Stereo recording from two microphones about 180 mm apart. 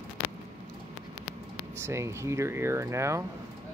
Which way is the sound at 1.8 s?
15° right (ahead or behind).